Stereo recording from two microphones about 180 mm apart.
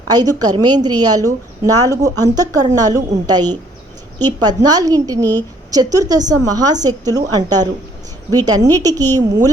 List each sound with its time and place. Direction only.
0.1 s a woman's voice: 20° right (ahead or behind)